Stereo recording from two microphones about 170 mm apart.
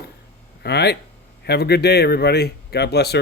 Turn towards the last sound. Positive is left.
turn(degrees=75)  # may be behind; listen again after turning